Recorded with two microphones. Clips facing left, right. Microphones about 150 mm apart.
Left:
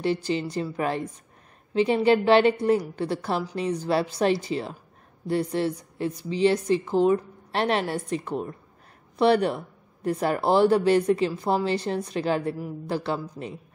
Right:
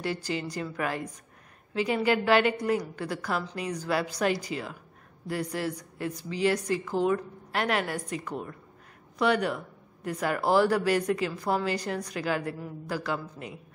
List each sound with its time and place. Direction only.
0.0 s a woman's voice: 20° left (ahead or behind)